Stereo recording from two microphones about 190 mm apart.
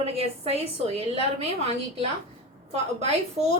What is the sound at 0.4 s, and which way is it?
Speech, 35° right (ahead or behind).